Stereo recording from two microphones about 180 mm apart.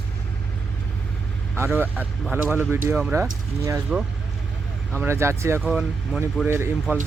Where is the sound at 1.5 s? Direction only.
15° right (ahead or behind).